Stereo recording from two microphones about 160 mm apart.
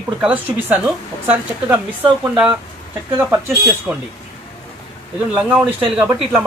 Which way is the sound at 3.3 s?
15° right (ahead or behind).